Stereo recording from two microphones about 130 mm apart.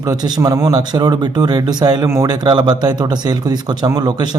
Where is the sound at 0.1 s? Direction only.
30° right (ahead or behind).